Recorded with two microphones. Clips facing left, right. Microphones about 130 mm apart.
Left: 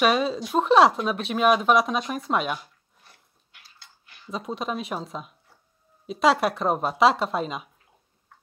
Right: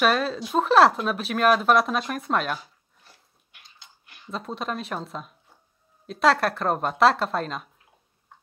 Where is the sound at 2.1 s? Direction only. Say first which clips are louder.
Even; centre (ahead or behind).